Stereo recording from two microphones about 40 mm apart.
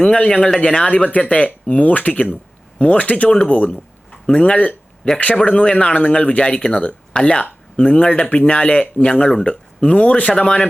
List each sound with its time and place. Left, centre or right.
0.0 s speech: left
2.7 s speech: left
9.0 s speech: left